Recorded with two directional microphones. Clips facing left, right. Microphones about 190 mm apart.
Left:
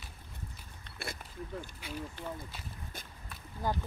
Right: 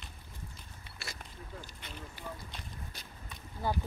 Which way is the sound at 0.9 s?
10° right (ahead or behind).